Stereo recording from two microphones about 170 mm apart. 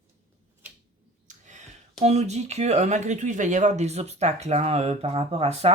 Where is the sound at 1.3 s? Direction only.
45° right (ahead or behind).